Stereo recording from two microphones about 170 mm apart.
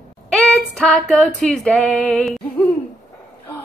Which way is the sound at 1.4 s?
5° left (ahead or behind).